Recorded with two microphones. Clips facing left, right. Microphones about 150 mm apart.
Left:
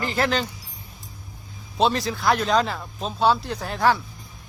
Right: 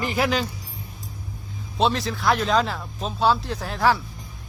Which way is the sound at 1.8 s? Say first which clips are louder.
Left 1 dB; centre (ahead or behind).